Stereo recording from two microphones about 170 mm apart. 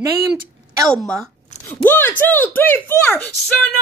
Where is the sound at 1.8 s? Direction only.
10° left (ahead or behind).